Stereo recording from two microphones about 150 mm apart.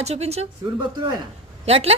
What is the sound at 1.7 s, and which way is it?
Speech, 40° right (ahead or behind).